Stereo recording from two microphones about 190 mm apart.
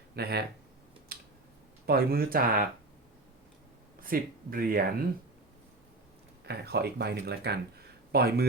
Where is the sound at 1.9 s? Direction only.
55° right (ahead or behind).